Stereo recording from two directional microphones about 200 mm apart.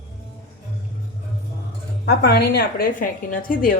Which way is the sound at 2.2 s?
55° left (ahead or behind).